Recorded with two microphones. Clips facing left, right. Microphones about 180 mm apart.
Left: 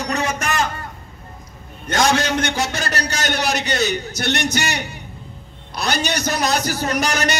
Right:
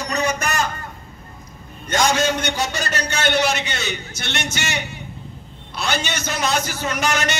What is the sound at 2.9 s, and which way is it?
A man's voice, 40° left (ahead or behind).